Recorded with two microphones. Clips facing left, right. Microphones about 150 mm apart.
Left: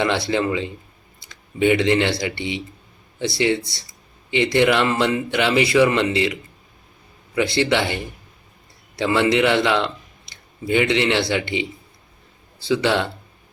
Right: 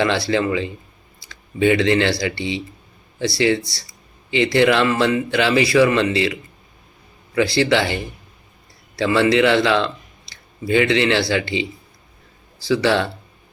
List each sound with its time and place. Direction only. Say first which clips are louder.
0.0 s speech: right 2 dB; 20° left (ahead or behind)
9.0 s a man's voice: right 2 dB; 20° left (ahead or behind)
12.6 s speech: right 2 dB; 20° left (ahead or behind)